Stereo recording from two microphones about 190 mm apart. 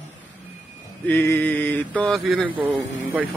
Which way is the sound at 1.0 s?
10° left (ahead or behind).